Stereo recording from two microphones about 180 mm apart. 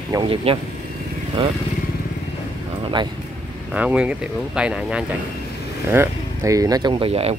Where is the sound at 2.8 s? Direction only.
25° right (ahead or behind).